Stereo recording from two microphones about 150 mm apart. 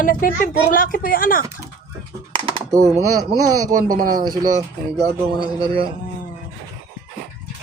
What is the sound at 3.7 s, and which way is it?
Speech, 70° right (ahead or behind).